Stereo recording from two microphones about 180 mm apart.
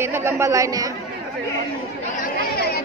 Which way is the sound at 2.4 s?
60° left (ahead or behind).